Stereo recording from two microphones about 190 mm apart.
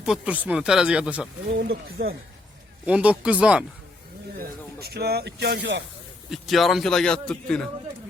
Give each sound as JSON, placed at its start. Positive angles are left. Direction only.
{"t": 0.0, "sound": "a man's voice", "side_deg": -5}
{"t": 1.5, "sound": "speech", "side_deg": -55}
{"t": 2.8, "sound": "speech", "side_deg": -5}
{"t": 4.4, "sound": "speech", "side_deg": -55}
{"t": 6.3, "sound": "a man's voice", "side_deg": 0}